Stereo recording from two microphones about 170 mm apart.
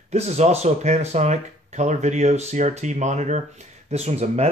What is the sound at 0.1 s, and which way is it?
Speech, 40° right (ahead or behind).